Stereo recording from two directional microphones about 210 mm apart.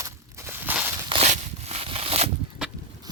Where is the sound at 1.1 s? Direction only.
30° right (ahead or behind).